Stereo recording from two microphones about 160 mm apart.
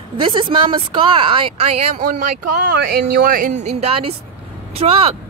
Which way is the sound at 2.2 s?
65° right (ahead or behind).